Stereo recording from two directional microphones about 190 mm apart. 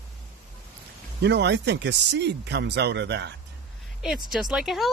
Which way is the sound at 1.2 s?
65° right (ahead or behind).